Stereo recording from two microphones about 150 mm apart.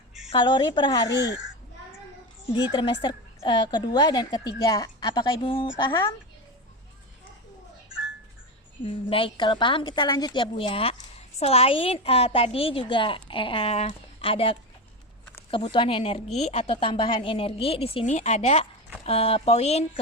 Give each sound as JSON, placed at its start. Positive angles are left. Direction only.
{"t": 0.3, "sound": "a woman's voice", "side_deg": 30}
{"t": 2.7, "sound": "a woman's voice", "side_deg": 35}
{"t": 5.7, "sound": "a woman's voice", "side_deg": 20}
{"t": 8.8, "sound": "a woman's voice", "side_deg": 35}